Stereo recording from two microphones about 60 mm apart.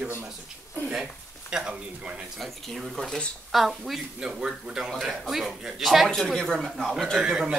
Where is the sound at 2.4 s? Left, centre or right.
Centre.